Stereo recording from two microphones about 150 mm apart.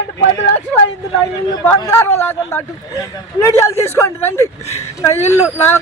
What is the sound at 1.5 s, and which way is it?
Speech, 15° left (ahead or behind).